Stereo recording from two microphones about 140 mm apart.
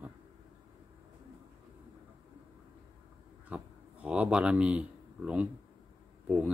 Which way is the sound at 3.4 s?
10° right (ahead or behind).